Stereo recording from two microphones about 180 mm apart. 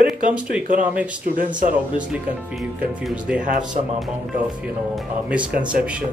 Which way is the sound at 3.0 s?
5° right (ahead or behind).